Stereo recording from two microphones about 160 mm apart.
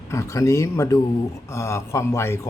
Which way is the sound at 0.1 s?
15° left (ahead or behind).